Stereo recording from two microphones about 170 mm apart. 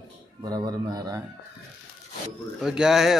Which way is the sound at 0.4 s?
25° right (ahead or behind).